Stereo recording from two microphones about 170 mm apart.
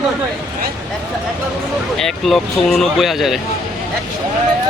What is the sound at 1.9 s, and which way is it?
Speech, centre (ahead or behind).